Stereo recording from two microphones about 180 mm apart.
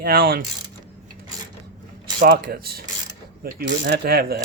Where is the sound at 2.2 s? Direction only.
60° right (ahead or behind).